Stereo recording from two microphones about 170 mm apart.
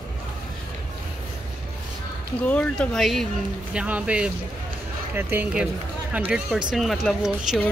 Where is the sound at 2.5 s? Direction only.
5° left (ahead or behind).